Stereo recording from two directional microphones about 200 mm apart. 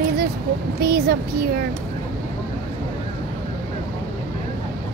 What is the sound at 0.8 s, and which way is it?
Speech, 50° right (ahead or behind).